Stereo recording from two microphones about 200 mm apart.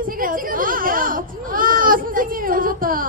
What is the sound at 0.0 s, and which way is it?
Baby cry, 45° right (ahead or behind).